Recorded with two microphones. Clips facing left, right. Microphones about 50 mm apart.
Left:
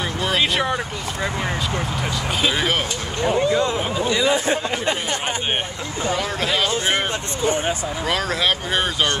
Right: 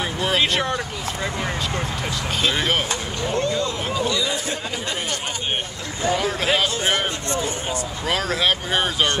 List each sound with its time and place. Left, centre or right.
0.2 s speech: centre
2.4 s speech: centre
3.3 s speech: centre
3.5 s speech: left
6.1 s speech: centre
8.1 s speech: centre